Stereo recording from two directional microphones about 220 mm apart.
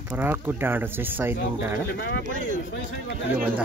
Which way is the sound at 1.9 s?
50° left (ahead or behind).